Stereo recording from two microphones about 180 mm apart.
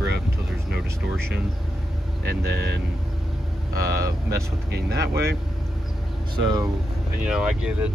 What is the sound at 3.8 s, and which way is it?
Speech, 60° right (ahead or behind).